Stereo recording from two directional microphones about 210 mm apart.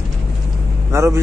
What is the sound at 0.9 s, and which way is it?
Speech, 15° right (ahead or behind).